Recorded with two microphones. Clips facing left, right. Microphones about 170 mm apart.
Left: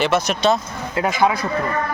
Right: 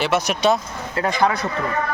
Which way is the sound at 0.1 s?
10° right (ahead or behind).